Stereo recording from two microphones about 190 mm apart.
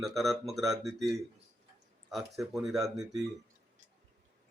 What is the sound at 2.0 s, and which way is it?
Speech, centre (ahead or behind).